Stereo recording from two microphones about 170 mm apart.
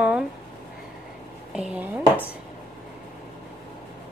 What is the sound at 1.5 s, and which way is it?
Speech, 5° right (ahead or behind).